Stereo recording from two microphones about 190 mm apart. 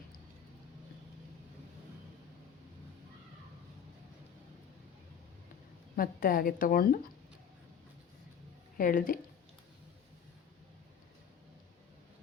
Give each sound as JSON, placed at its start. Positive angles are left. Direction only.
{"t": 6.0, "sound": "a woman's voice", "side_deg": 50}
{"t": 8.8, "sound": "a woman's voice", "side_deg": 45}